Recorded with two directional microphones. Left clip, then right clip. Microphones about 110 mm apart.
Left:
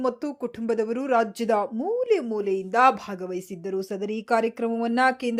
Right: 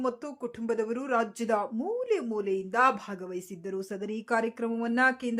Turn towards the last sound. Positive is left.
turn(degrees=35)  # may be behind; listen again after turning